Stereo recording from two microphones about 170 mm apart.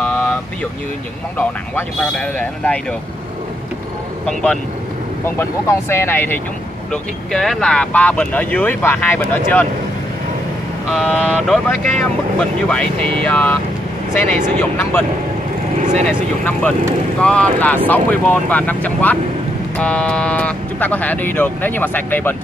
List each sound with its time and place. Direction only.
0.0 s vehicle: 5° left (ahead or behind)
1.4 s speech: 5° left (ahead or behind)
4.3 s speech: 5° left (ahead or behind)
11.0 s speech: centre (ahead or behind)
14.6 s speech: 10° left (ahead or behind)
15.8 s speech: 45° right (ahead or behind)
17.2 s speech: 5° left (ahead or behind)